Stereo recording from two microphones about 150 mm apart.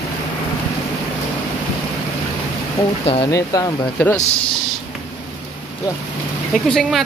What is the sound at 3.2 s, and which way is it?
Speech, 25° left (ahead or behind).